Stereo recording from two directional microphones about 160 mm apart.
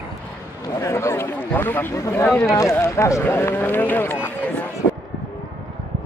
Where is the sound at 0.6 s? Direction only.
20° left (ahead or behind).